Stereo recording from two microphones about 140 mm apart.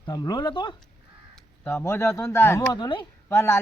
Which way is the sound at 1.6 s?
15° left (ahead or behind).